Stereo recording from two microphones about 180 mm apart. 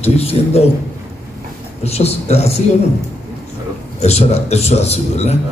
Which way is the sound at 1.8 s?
35° left (ahead or behind).